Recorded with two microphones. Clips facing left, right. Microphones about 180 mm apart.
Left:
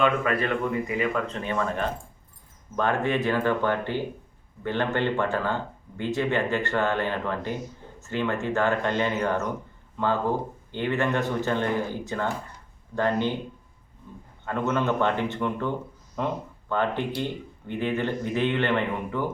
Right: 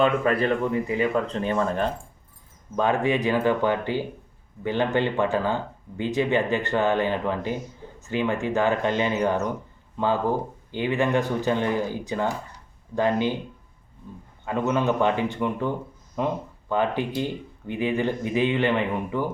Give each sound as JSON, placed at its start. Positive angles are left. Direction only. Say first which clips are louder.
{"t": 0.0, "sound": "speech", "louder": "right 3 dB", "side_deg": -35}
{"t": 2.7, "sound": "speech", "louder": "right 2 dB", "side_deg": -15}
{"t": 10.7, "sound": "speech", "louder": "right 2 dB", "side_deg": -10}
{"t": 14.4, "sound": "speech", "louder": "right 2 dB", "side_deg": -15}